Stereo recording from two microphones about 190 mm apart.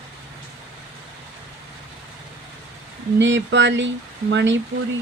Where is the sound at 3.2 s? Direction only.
70° right (ahead or behind).